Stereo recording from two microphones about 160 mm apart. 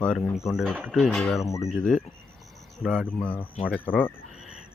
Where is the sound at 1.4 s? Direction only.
20° left (ahead or behind).